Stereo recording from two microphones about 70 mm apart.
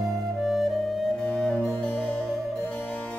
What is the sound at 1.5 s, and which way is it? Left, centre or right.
Music, left.